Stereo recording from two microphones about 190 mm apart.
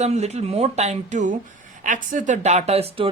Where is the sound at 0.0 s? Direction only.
35° right (ahead or behind).